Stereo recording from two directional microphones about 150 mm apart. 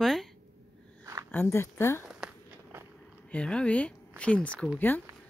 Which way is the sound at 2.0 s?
5° right (ahead or behind).